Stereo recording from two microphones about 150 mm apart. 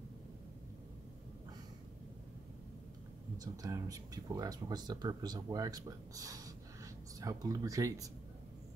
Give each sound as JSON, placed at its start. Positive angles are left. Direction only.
{"t": 3.3, "sound": "speech", "side_deg": -25}